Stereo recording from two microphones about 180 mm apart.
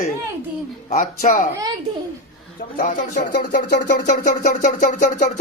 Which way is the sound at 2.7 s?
50° left (ahead or behind).